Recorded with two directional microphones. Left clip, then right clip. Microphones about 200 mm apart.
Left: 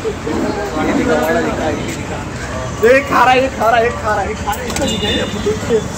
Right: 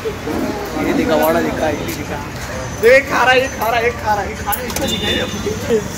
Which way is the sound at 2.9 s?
50° left (ahead or behind).